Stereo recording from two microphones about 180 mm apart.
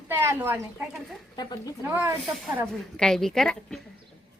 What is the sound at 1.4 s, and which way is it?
Speech, 20° left (ahead or behind).